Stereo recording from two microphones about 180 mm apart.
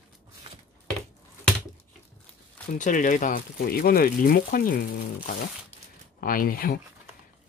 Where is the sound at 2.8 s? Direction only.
45° left (ahead or behind).